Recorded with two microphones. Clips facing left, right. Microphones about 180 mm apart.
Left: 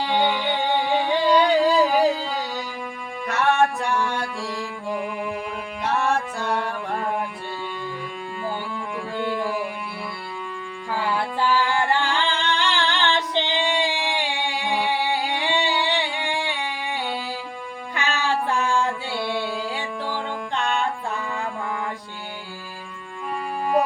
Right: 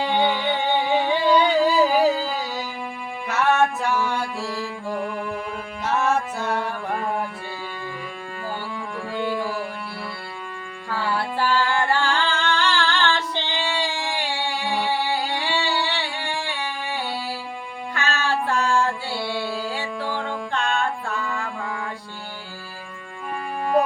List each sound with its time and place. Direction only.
0.0 s music: centre (ahead or behind)
9.1 s music: 15° right (ahead or behind)
10.9 s singing: 15° left (ahead or behind)
17.9 s music: 15° left (ahead or behind)